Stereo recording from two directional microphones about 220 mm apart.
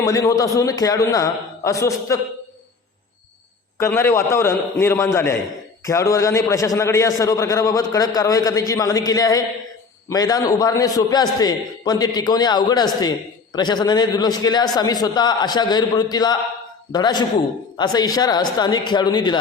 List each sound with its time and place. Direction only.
0.0 s a man's voice: 15° left (ahead or behind)
3.8 s a man's voice: 10° left (ahead or behind)